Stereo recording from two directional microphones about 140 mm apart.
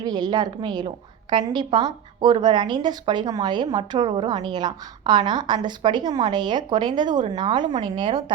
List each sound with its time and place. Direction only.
0.0 s a woman's voice: 30° right (ahead or behind)